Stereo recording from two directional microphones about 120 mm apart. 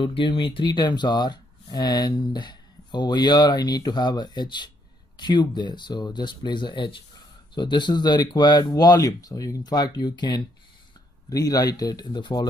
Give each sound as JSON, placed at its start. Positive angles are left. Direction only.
{"t": 0.0, "sound": "speech", "side_deg": 45}